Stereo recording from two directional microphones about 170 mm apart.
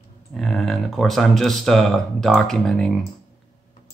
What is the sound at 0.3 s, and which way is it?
Speech, centre (ahead or behind).